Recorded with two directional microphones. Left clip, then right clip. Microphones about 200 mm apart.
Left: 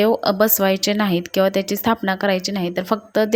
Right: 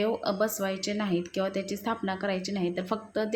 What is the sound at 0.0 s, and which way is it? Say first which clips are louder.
A woman's voice: left 11 dB; 40° left (ahead or behind).